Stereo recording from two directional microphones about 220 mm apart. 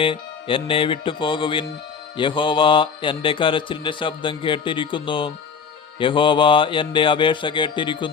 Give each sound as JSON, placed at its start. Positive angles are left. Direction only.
{"t": 0.0, "sound": "a man's voice", "side_deg": 25}